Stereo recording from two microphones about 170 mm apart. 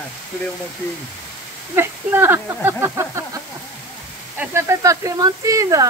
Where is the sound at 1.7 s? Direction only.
15° right (ahead or behind).